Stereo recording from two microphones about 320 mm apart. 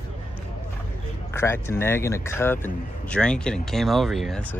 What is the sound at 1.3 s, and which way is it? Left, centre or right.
Speech, centre.